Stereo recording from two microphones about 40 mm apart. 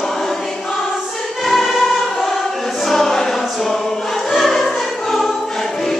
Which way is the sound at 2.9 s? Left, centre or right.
Centre.